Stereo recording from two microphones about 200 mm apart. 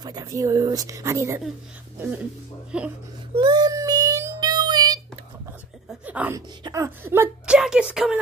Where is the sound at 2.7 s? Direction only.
5° right (ahead or behind).